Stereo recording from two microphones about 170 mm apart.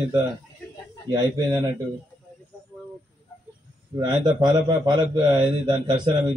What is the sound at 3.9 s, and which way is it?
A man's voice, 25° right (ahead or behind).